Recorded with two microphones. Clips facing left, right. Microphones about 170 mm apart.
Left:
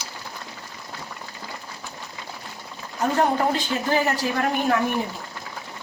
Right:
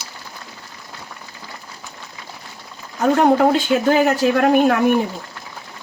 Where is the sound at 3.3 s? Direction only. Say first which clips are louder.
Right 8 dB; 80° right.